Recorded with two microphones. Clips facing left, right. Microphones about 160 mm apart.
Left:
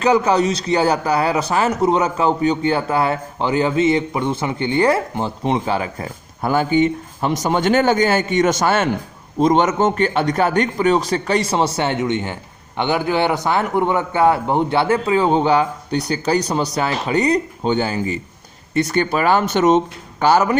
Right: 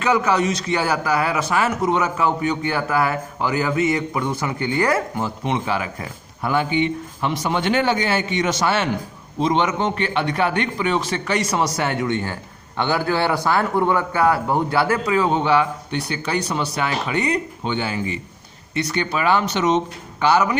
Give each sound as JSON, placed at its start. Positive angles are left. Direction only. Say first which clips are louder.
{"t": 0.0, "sound": "a man's voice", "louder": "left 4 dB", "side_deg": 30}